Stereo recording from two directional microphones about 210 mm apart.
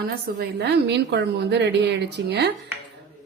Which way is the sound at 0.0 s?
55° right (ahead or behind).